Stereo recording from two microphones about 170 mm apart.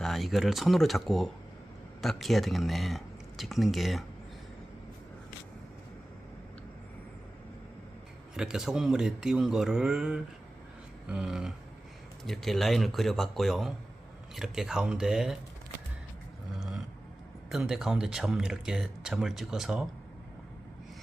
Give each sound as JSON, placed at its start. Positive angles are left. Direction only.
{"t": 0.0, "sound": "speech", "side_deg": 0}
{"t": 8.4, "sound": "speech", "side_deg": -5}
{"t": 16.6, "sound": "a sound", "side_deg": 0}
{"t": 17.5, "sound": "speech", "side_deg": 0}